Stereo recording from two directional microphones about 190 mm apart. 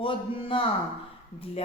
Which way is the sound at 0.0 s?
25° left (ahead or behind).